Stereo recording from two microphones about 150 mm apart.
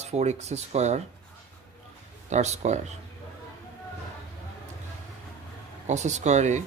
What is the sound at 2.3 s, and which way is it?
Speech, 50° right (ahead or behind).